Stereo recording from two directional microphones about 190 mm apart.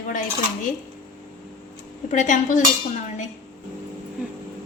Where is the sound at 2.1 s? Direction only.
40° left (ahead or behind).